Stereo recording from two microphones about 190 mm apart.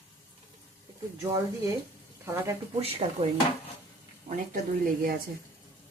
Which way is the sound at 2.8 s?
30° right (ahead or behind).